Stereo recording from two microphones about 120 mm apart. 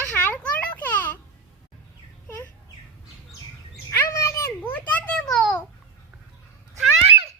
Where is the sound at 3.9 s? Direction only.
25° left (ahead or behind).